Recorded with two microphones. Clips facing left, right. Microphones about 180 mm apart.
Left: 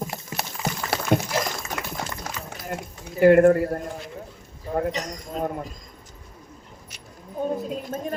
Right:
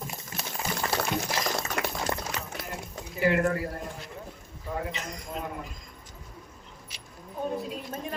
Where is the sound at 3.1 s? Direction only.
50° left (ahead or behind).